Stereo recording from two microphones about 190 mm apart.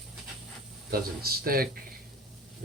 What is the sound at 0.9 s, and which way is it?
Speech, 50° right (ahead or behind).